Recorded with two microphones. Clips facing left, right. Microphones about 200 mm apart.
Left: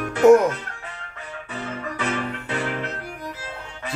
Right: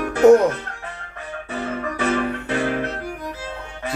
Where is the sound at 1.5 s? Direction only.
50° right (ahead or behind).